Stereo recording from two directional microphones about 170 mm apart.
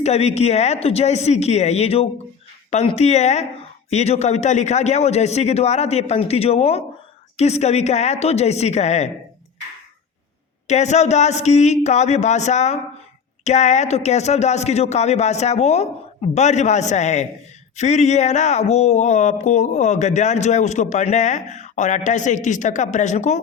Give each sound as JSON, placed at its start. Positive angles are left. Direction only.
{"t": 0.0, "sound": "speech", "side_deg": 40}
{"t": 10.7, "sound": "speech", "side_deg": 40}